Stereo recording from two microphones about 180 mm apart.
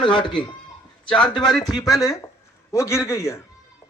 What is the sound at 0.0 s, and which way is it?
A man's voice, 25° left (ahead or behind).